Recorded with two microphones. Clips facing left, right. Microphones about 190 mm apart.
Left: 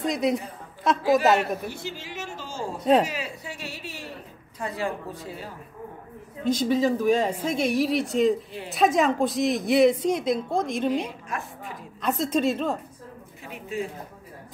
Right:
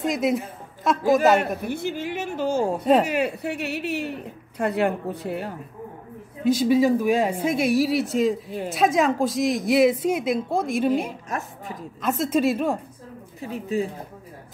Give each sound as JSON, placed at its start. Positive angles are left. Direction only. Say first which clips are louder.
{"t": 0.0, "sound": "speech", "louder": "right 2 dB", "side_deg": 0}
{"t": 1.7, "sound": "speech", "louder": "right 9 dB", "side_deg": -55}
{"t": 6.4, "sound": "speech", "louder": "right 4 dB", "side_deg": -10}
{"t": 8.5, "sound": "a woman's voice", "louder": "right 7 dB", "side_deg": -45}
{"t": 8.7, "sound": "speech", "louder": "right 1 dB", "side_deg": 0}
{"t": 11.2, "sound": "a woman's voice", "louder": "right 3 dB", "side_deg": -40}
{"t": 12.0, "sound": "speech", "louder": "right 2 dB", "side_deg": 0}
{"t": 13.4, "sound": "speech", "louder": "right 6 dB", "side_deg": -35}